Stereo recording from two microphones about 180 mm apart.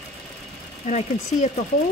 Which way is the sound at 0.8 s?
40° left (ahead or behind).